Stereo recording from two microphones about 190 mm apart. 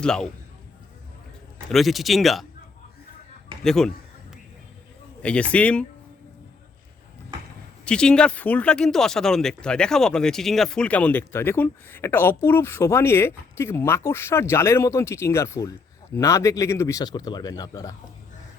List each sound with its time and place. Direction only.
0.0 s speech: 5° left (ahead or behind)
1.7 s speech: centre (ahead or behind)
3.6 s speech: centre (ahead or behind)
5.2 s speech: 5° left (ahead or behind)
7.9 s speech: 5° left (ahead or behind)